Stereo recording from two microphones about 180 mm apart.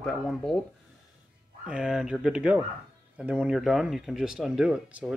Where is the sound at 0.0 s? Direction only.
Centre (ahead or behind).